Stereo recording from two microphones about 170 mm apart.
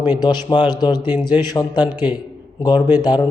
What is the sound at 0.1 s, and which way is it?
Speech, 25° left (ahead or behind).